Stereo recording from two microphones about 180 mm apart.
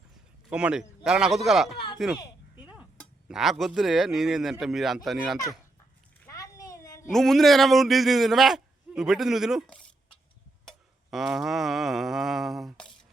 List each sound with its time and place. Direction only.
0.5 s a man's voice: 5° right (ahead or behind)
1.7 s speech: 30° left (ahead or behind)
3.2 s a man's voice: centre (ahead or behind)
6.1 s a sound: 15° left (ahead or behind)
7.1 s a man's voice: centre (ahead or behind)
10.7 s a sound: centre (ahead or behind)